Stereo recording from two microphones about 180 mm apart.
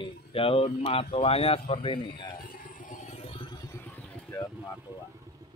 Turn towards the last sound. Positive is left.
turn(degrees=-10)  # may be behind; listen again after turning